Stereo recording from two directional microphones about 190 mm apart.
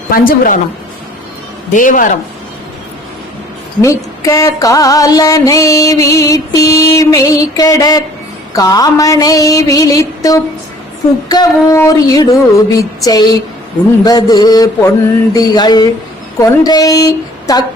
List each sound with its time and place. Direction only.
0.1 s a woman's voice: 45° left (ahead or behind)
1.7 s a woman's voice: 45° left (ahead or behind)
3.8 s music: 15° left (ahead or behind)
14.0 s a woman's voice: 20° left (ahead or behind)